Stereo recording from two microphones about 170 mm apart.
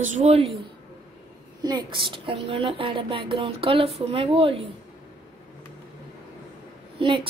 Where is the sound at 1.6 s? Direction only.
25° right (ahead or behind).